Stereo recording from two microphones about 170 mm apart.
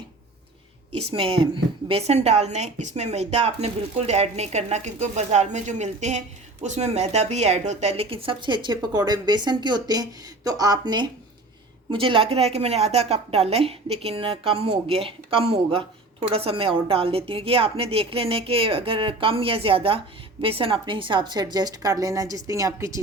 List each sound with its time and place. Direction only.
0.9 s a woman's voice: 35° right (ahead or behind)